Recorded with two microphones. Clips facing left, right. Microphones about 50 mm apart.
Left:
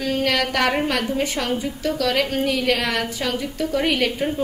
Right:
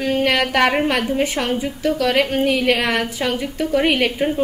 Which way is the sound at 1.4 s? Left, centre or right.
Right.